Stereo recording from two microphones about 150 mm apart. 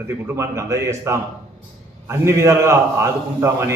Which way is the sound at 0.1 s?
15° right (ahead or behind).